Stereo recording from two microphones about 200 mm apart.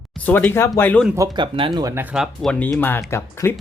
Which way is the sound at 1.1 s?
15° right (ahead or behind).